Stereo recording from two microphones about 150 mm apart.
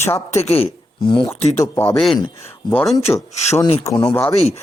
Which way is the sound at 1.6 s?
20° left (ahead or behind).